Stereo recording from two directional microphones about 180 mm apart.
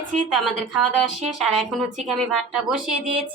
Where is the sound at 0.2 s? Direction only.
5° left (ahead or behind).